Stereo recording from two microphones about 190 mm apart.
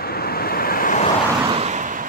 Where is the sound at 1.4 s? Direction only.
35° right (ahead or behind).